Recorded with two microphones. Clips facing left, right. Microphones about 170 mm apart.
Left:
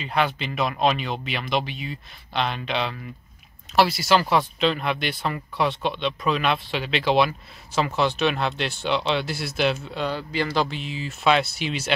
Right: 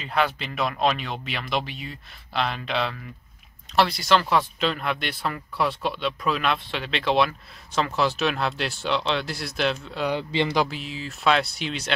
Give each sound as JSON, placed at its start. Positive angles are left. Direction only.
{"t": 0.0, "sound": "speech", "side_deg": 0}
{"t": 10.0, "sound": "speech", "side_deg": -20}
{"t": 10.6, "sound": "speech", "side_deg": -5}